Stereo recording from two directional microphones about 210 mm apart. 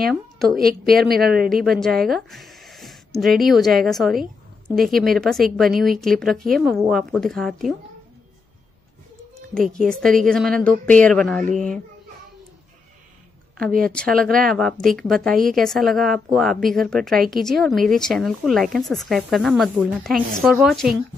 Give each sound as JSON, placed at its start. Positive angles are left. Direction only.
{"t": 0.1, "sound": "a woman's voice", "side_deg": 0}
{"t": 0.6, "sound": "a woman's voice", "side_deg": -45}
{"t": 0.9, "sound": "speech", "side_deg": 0}
{"t": 9.5, "sound": "speech", "side_deg": 5}
{"t": 13.8, "sound": "speech", "side_deg": 5}